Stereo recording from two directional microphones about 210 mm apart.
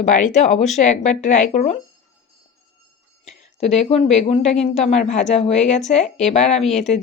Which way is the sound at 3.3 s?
30° left (ahead or behind).